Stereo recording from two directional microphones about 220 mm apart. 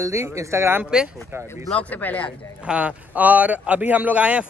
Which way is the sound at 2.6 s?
5° right (ahead or behind).